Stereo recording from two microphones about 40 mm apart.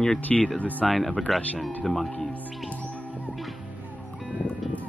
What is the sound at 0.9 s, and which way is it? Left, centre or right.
Speech, centre.